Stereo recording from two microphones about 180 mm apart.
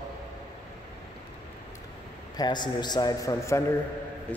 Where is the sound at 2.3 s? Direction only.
25° left (ahead or behind).